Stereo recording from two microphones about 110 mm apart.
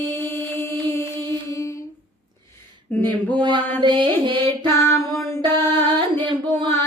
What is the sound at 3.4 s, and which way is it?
Carnatic music, 45° right (ahead or behind).